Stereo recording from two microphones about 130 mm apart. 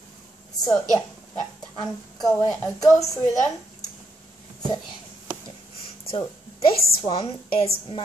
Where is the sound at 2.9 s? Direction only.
25° left (ahead or behind).